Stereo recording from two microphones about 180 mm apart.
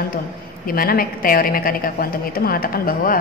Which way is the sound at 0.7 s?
55° left (ahead or behind).